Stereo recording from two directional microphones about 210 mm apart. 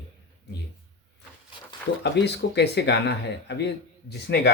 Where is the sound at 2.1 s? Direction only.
55° left (ahead or behind).